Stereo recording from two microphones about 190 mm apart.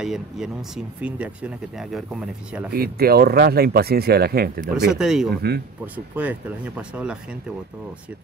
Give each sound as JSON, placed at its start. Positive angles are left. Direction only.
{"t": 0.0, "sound": "speech", "side_deg": 0}
{"t": 2.7, "sound": "speech", "side_deg": -55}
{"t": 4.7, "sound": "speech", "side_deg": -5}